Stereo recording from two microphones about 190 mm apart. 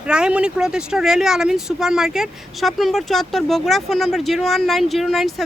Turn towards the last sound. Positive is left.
turn(degrees=0)  # may be behind; listen again after turning